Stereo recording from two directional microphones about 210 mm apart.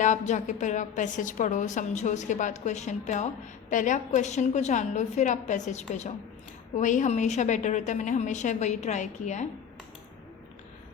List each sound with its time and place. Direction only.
0.0 s a woman's voice: 35° left (ahead or behind)